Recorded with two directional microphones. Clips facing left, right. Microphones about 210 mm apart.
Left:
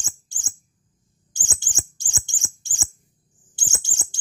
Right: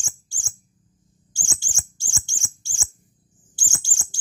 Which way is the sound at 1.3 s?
20° left (ahead or behind).